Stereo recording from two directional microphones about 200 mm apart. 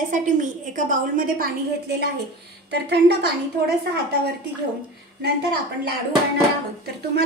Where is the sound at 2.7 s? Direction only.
55° right (ahead or behind).